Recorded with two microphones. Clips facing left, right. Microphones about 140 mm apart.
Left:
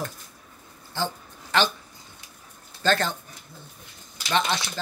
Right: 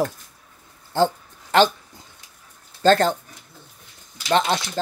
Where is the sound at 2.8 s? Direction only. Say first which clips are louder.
Right 8 dB; 40° right (ahead or behind).